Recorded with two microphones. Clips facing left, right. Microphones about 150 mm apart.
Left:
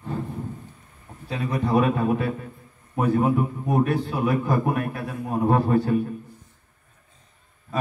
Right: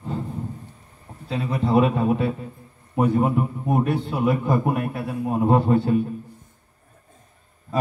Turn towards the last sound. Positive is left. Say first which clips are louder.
# right 2 dB
turn(degrees=-25)  # may be behind; listen again after turning